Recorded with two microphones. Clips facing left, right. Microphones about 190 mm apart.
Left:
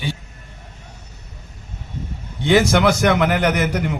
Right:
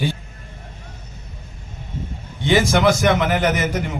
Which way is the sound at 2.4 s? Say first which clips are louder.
Left 1 dB; 65° left (ahead or behind).